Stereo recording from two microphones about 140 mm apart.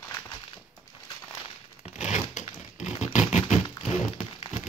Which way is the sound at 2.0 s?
55° left (ahead or behind).